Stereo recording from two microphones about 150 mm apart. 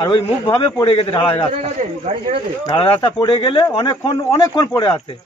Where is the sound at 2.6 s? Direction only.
30° left (ahead or behind).